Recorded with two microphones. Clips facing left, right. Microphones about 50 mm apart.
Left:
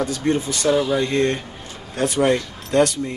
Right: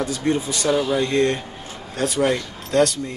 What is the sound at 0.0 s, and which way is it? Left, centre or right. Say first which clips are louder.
A man's voice: left 1 dB; centre.